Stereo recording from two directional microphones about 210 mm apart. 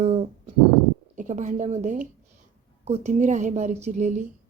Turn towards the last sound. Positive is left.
turn(degrees=-35)  # may be behind; listen again after turning